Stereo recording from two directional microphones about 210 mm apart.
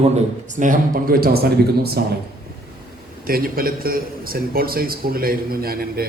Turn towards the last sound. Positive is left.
turn(degrees=-45)  # may be behind; listen again after turning